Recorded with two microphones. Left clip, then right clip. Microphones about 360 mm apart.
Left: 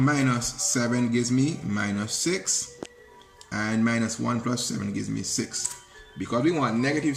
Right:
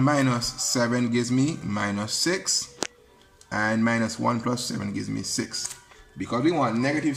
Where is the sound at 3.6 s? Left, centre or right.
Centre.